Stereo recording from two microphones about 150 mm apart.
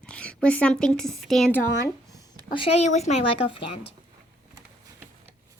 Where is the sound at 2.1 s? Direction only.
35° left (ahead or behind).